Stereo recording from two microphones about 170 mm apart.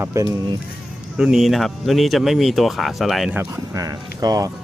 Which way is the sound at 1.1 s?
5° right (ahead or behind).